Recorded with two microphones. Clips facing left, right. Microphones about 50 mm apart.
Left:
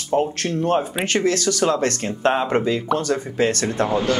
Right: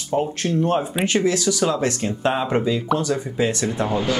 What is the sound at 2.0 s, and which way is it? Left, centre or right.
Speech, left.